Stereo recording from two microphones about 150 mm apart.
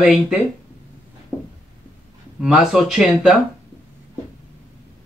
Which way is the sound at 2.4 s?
5° right (ahead or behind).